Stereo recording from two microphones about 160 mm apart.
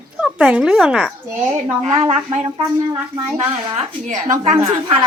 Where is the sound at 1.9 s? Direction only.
45° right (ahead or behind).